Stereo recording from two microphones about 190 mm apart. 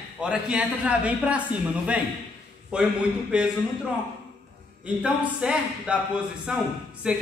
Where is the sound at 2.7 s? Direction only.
5° right (ahead or behind).